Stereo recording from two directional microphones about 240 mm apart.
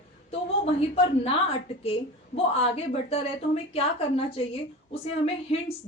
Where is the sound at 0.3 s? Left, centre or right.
Left.